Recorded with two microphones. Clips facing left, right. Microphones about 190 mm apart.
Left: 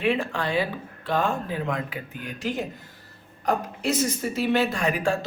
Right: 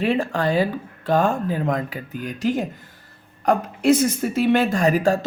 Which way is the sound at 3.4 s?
55° right (ahead or behind).